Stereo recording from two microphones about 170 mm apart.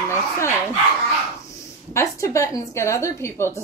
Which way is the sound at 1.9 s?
20° left (ahead or behind).